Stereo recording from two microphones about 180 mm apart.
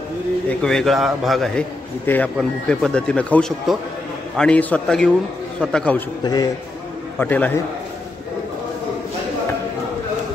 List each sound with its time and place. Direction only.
0.5 s speech: 5° left (ahead or behind)
6.2 s a man's voice: 20° left (ahead or behind)
7.2 s a man's voice: 10° left (ahead or behind)